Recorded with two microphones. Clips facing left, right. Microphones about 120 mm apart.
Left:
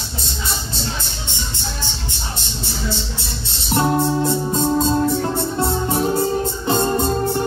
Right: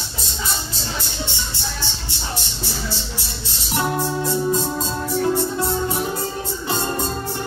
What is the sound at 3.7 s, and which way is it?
Music, 25° left (ahead or behind).